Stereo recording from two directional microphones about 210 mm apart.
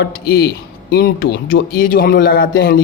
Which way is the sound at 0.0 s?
45° left (ahead or behind).